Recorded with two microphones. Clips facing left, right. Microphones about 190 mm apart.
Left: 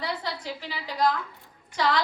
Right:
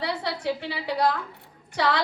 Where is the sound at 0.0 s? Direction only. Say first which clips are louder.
Right 4 dB; 65° right (ahead or behind).